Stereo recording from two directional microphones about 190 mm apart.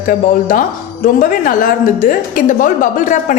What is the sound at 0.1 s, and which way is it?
A woman's voice, 45° left (ahead or behind).